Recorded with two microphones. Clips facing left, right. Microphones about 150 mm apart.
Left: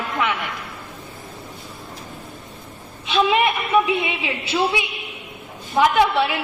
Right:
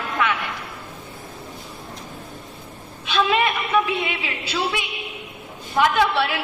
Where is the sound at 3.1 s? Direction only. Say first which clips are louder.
Left 2 dB; 25° left (ahead or behind).